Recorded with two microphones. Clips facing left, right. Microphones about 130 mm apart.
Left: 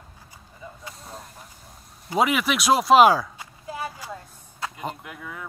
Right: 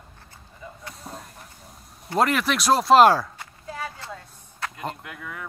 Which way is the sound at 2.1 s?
5° left (ahead or behind).